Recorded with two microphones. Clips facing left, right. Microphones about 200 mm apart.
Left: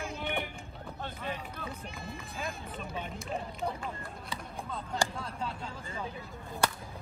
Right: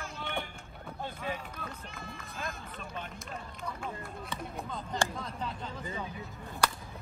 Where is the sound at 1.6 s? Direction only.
10° left (ahead or behind).